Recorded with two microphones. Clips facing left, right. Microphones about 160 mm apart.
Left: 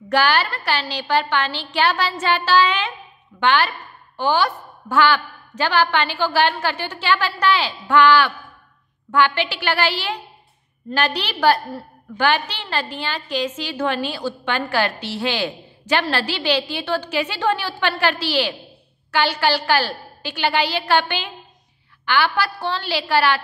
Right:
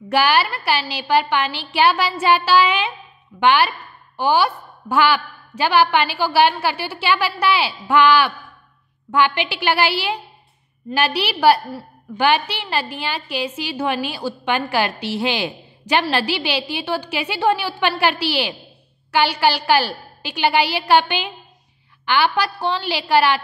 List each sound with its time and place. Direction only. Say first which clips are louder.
0.1 s a woman's voice: right 1 dB; 10° right (ahead or behind)